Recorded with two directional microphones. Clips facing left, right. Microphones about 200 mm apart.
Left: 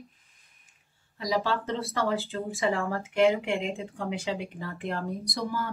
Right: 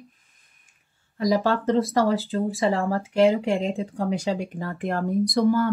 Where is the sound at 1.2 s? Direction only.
50° right (ahead or behind).